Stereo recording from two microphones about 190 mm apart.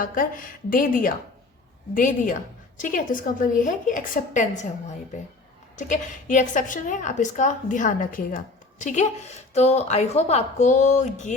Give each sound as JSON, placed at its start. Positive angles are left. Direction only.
{"t": 0.0, "sound": "a woman's voice", "side_deg": 45}
{"t": 5.7, "sound": "a woman's voice", "side_deg": 40}